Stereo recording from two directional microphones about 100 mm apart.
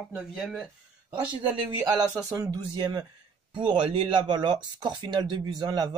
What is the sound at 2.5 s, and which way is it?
Speech, 45° right (ahead or behind).